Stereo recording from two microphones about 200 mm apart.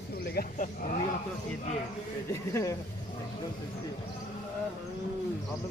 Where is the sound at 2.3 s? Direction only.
15° left (ahead or behind).